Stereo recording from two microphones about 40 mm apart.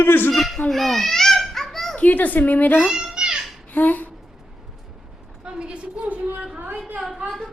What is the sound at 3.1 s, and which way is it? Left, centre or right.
Children playing, right.